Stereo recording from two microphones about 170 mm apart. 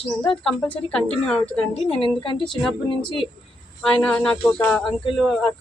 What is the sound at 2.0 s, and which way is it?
Speech, 30° left (ahead or behind).